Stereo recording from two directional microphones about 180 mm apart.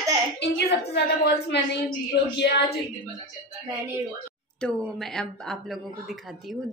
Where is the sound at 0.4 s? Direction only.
65° left (ahead or behind).